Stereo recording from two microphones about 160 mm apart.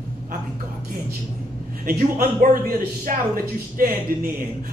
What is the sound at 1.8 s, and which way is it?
A man's voice, 65° right (ahead or behind).